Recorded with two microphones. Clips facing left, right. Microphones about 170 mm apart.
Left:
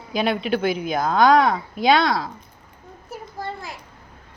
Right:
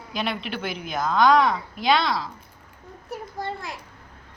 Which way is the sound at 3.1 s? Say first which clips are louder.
Right 1 dB; centre (ahead or behind).